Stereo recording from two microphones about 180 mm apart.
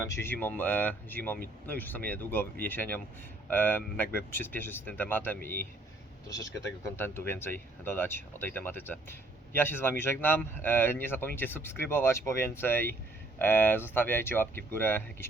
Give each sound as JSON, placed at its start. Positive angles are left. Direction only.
{"t": 0.2, "sound": "speech", "side_deg": 10}